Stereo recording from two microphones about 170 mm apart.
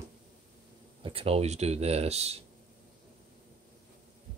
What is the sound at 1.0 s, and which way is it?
Speech, 35° right (ahead or behind).